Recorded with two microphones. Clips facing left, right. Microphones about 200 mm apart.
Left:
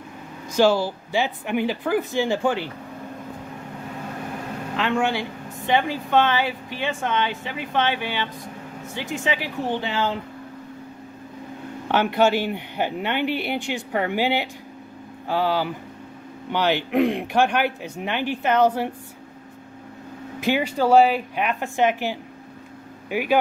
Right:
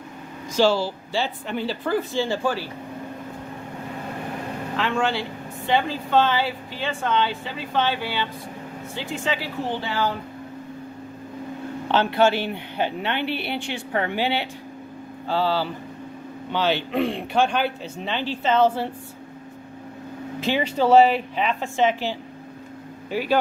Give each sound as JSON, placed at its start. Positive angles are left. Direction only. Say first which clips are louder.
{"t": 0.6, "sound": "speech", "louder": "left 1 dB", "side_deg": 15}
{"t": 4.7, "sound": "speech", "louder": "left 1 dB", "side_deg": 15}
{"t": 11.9, "sound": "speech", "louder": "even", "side_deg": 15}
{"t": 20.3, "sound": "speech", "louder": "left 1 dB", "side_deg": 10}